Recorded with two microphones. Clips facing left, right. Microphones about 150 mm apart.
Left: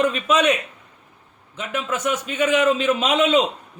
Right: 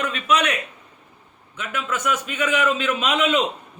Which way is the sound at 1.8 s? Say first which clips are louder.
Left 1 dB; 30° left (ahead or behind).